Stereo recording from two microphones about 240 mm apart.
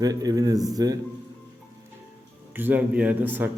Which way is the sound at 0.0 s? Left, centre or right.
Centre.